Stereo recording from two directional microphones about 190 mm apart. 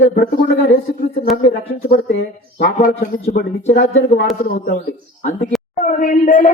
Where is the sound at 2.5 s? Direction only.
50° left (ahead or behind).